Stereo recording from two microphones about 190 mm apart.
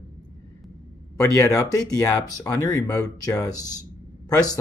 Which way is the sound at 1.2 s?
15° left (ahead or behind).